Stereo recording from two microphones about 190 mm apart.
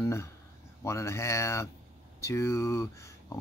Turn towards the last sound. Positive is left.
turn(degrees=15)  # may be behind; listen again after turning